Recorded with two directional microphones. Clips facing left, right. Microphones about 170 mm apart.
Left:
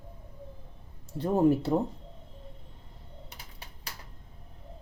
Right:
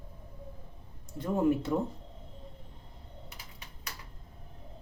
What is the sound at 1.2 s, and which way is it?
Speech, 35° left (ahead or behind).